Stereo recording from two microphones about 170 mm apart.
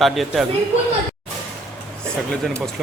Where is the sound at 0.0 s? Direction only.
Centre (ahead or behind).